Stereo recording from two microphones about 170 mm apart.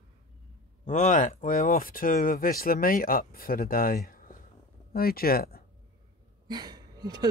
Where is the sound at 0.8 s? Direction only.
45° left (ahead or behind); by 5.6 s 60° left (ahead or behind).